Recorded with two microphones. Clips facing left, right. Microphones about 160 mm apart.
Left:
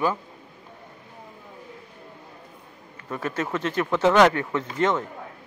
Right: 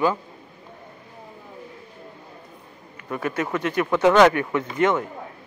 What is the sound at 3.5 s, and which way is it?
Speech, 30° left (ahead or behind).